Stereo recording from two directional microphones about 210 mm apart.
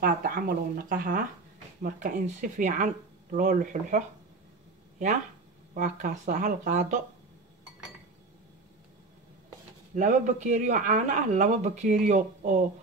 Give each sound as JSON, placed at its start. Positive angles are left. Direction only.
{"t": 0.0, "sound": "speech", "side_deg": -45}
{"t": 9.9, "sound": "speech", "side_deg": -35}